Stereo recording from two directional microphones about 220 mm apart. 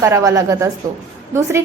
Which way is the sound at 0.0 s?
15° right (ahead or behind).